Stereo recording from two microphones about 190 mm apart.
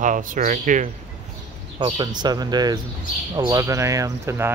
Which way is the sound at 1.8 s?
20° right (ahead or behind).